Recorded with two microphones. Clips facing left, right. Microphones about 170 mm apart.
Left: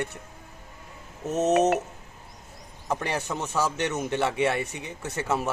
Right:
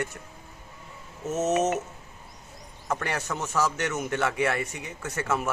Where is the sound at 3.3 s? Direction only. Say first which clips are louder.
Right 1 dB; 30° left (ahead or behind).